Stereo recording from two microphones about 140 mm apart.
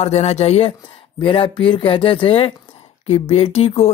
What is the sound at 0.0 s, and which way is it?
A man's voice, 50° left (ahead or behind).